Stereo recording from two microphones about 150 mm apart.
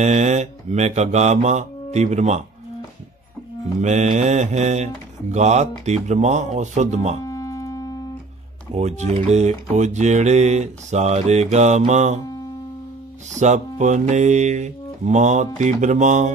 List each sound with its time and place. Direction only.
0.0 s speech: 50° right (ahead or behind)
3.8 s speech: 50° right (ahead or behind)
7.2 s music: 20° left (ahead or behind)
8.7 s speech: 50° right (ahead or behind)
13.3 s speech: 50° right (ahead or behind)